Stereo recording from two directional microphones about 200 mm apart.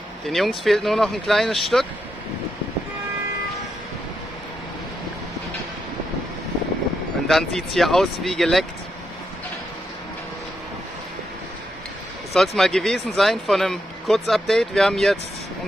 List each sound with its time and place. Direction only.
0.3 s speech: centre (ahead or behind)
7.2 s speech: centre (ahead or behind)
12.4 s speech: centre (ahead or behind)